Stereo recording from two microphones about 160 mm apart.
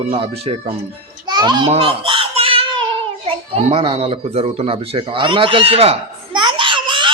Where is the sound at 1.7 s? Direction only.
35° right (ahead or behind).